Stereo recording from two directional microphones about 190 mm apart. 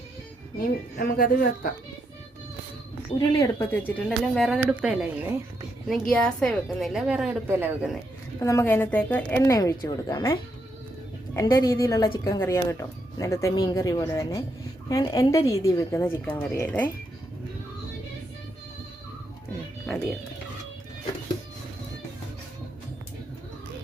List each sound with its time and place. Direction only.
0.9 s a woman's voice: 50° left (ahead or behind)
3.1 s a woman's voice: 20° left (ahead or behind); by 7.9 s 10° right (ahead or behind)
8.4 s a woman's voice: 15° left (ahead or behind)
11.3 s a woman's voice: 20° left (ahead or behind)